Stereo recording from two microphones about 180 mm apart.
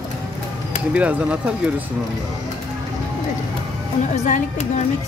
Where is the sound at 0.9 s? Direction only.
5° right (ahead or behind).